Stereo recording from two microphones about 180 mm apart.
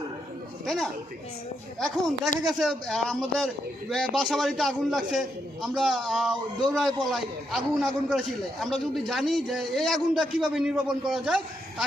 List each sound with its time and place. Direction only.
0.6 s a man's voice: centre (ahead or behind)